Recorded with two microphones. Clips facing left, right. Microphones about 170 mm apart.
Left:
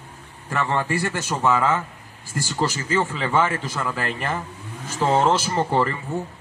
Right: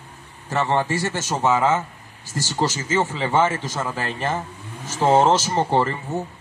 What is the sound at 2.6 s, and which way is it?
A man's voice, 20° right (ahead or behind).